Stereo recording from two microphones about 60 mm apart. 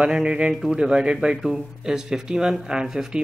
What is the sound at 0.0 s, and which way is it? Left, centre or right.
Speech, centre.